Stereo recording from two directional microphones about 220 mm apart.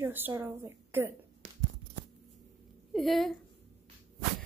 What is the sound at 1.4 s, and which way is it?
Tearing, 35° right (ahead or behind).